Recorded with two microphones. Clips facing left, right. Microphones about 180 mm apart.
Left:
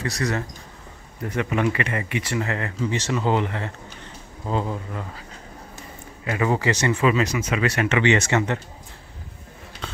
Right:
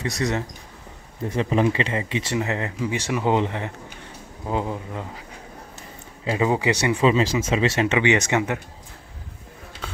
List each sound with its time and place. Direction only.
0.0 s speech: 20° right (ahead or behind)
6.2 s speech: 20° right (ahead or behind)
7.1 s speech: 25° right (ahead or behind)